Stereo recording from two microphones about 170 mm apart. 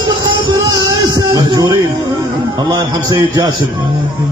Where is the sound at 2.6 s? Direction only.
25° right (ahead or behind).